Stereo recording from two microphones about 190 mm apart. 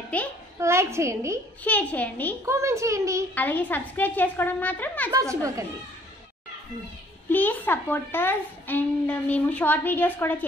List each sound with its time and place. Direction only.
0.1 s a woman's voice: 5° left (ahead or behind)
0.6 s a woman's voice: 15° right (ahead or behind)
1.6 s a woman's voice: 10° left (ahead or behind)
2.4 s a woman's voice: 15° right (ahead or behind)
3.3 s a woman's voice: 10° left (ahead or behind)
5.1 s a woman's voice: 15° right (ahead or behind)
7.2 s a woman's voice: 10° left (ahead or behind)